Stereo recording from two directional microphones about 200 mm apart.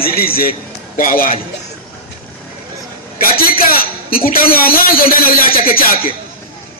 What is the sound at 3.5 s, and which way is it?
A man's voice, 45° left (ahead or behind).